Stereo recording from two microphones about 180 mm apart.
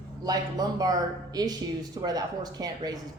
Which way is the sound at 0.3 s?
20° right (ahead or behind).